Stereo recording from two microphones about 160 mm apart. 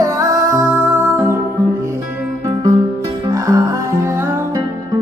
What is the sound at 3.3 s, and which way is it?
Music, 20° right (ahead or behind).